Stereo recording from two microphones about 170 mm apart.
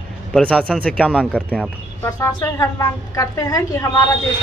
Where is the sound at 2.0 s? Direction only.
20° left (ahead or behind).